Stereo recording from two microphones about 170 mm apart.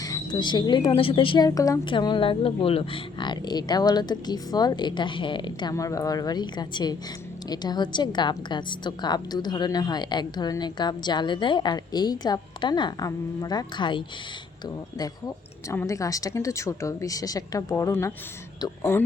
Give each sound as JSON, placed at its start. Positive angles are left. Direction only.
{"t": 0.0, "sound": "a woman's voice", "side_deg": 25}
{"t": 15.7, "sound": "a woman's voice", "side_deg": 15}